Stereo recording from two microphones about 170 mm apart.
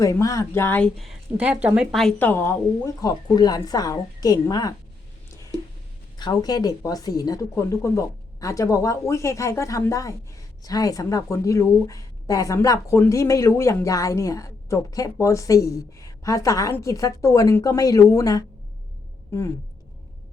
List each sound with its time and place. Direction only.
0.0 s a woman's voice: 20° left (ahead or behind)
6.1 s a woman's voice: 25° left (ahead or behind)